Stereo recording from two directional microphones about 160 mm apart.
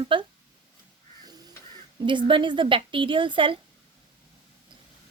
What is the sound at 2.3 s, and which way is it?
A woman's voice, 30° right (ahead or behind).